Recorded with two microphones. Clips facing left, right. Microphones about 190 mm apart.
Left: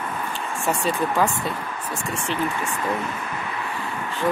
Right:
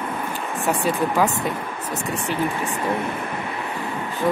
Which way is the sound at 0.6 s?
15° right (ahead or behind).